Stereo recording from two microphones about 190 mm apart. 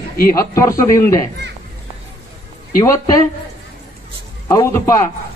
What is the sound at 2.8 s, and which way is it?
Speech, 15° left (ahead or behind).